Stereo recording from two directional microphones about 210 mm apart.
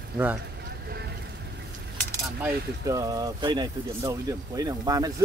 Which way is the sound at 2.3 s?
10° right (ahead or behind).